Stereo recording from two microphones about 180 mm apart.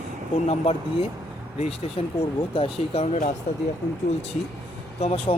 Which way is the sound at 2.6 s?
35° left (ahead or behind).